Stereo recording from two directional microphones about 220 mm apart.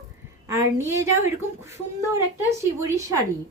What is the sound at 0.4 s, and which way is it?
Speech, 10° right (ahead or behind).